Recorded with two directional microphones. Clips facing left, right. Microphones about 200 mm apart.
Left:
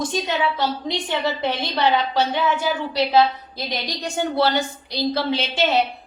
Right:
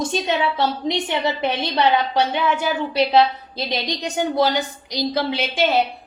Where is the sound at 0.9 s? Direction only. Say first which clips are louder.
Right 2 dB; 20° right (ahead or behind).